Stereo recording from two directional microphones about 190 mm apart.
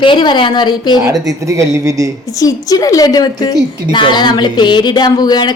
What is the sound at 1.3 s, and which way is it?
Speech, 15° right (ahead or behind).